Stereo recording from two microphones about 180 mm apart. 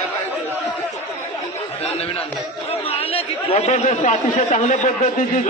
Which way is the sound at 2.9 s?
35° left (ahead or behind).